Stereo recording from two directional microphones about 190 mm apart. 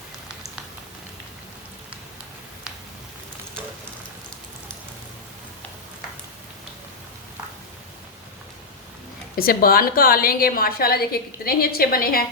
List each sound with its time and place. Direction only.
9.3 s a woman's voice: 50° left (ahead or behind)